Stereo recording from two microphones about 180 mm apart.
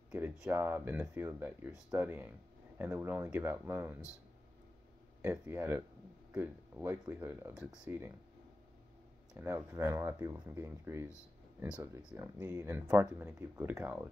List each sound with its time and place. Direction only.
0.1 s speech: 10° right (ahead or behind)
5.2 s speech: 10° right (ahead or behind)
9.3 s speech: 15° right (ahead or behind)
12.1 s speech: 15° right (ahead or behind)